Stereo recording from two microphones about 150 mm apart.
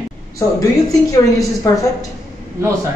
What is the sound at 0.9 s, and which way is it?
Speech, 20° left (ahead or behind).